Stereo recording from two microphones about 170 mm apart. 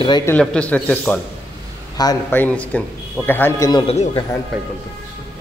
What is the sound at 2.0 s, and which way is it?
Speech, 20° left (ahead or behind).